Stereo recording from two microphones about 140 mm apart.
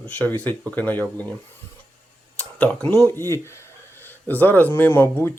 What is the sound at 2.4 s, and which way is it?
Speech, 10° left (ahead or behind).